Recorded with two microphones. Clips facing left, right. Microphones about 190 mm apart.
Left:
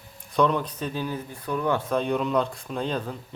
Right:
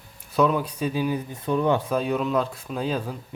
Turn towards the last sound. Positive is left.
turn(degrees=-5)  # may be behind; listen again after turning